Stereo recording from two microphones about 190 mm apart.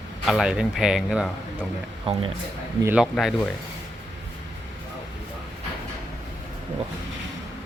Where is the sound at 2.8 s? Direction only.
5° right (ahead or behind).